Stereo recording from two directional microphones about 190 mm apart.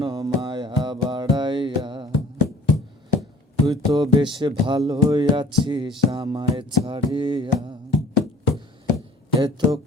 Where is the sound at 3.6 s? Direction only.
20° right (ahead or behind).